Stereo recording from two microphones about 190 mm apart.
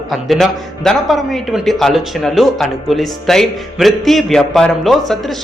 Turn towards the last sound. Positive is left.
turn(degrees=0)  # may be behind; listen again after turning